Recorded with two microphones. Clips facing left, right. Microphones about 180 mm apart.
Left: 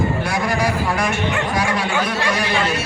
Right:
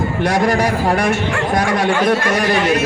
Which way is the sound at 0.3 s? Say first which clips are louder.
Right 5 dB; 40° right (ahead or behind).